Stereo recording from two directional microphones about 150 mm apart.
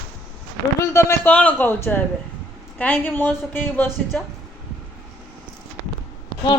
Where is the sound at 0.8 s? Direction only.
15° left (ahead or behind).